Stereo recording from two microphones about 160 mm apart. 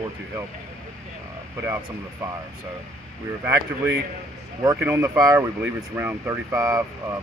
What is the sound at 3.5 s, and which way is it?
Speech, 15° right (ahead or behind).